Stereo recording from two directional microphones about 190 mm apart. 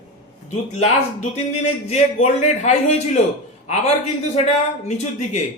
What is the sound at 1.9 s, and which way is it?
Speech, 40° left (ahead or behind).